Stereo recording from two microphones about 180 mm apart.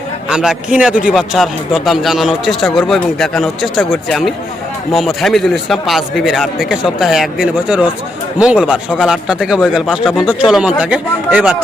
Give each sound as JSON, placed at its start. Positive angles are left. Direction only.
{"t": 0.3, "sound": "a man's voice", "side_deg": -5}